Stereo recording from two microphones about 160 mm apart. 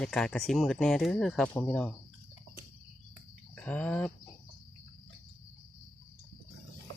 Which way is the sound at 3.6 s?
10° left (ahead or behind).